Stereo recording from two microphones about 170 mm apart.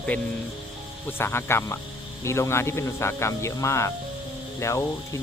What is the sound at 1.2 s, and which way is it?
Speech, 15° left (ahead or behind).